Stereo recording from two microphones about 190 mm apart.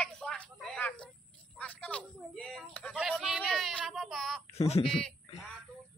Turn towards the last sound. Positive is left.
turn(degrees=0)  # may be behind; listen again after turning